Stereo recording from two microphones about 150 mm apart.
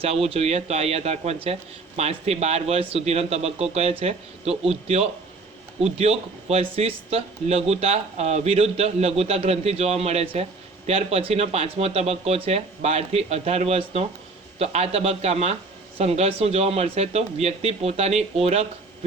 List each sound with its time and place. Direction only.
0.0 s speech: 40° right (ahead or behind)